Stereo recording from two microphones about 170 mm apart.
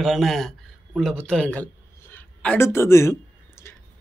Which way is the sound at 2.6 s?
15° left (ahead or behind).